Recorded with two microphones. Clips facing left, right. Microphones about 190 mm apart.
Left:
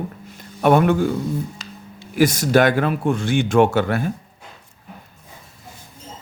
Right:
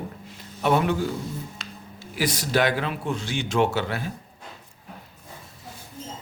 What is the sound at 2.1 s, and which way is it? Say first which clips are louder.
Speech: left 8 dB; 45° left (ahead or behind).